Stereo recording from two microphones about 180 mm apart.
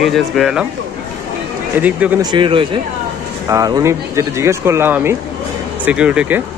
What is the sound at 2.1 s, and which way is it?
Speech, 25° right (ahead or behind).